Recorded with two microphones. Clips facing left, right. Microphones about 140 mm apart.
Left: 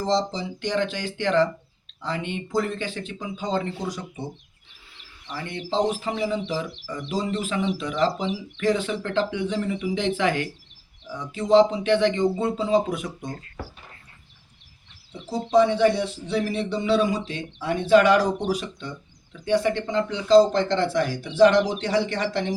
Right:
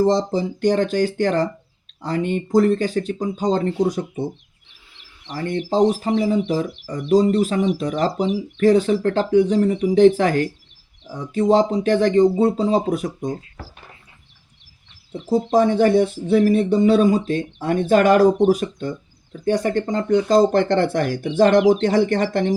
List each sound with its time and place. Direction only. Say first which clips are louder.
0.0 s speech: right 6 dB; 50° right (ahead or behind)
5.7 s speech: right 6 dB; 40° right (ahead or behind)
13.1 s speech: right 8 dB; 20° right (ahead or behind)
15.1 s speech: right 3 dB; 50° right (ahead or behind)